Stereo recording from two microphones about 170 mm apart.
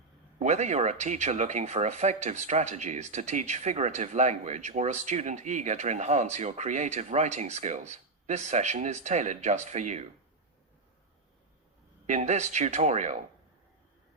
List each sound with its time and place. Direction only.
0.3 s speech: 45° right (ahead or behind)
12.0 s speech: 45° right (ahead or behind)